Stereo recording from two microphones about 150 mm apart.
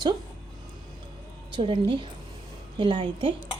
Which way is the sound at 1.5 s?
35° right (ahead or behind).